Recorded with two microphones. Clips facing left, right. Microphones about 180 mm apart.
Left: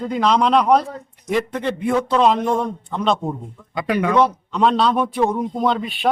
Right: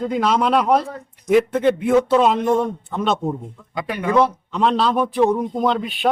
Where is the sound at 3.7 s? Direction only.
90° left.